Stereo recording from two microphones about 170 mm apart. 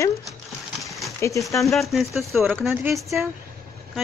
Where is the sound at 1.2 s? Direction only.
15° left (ahead or behind).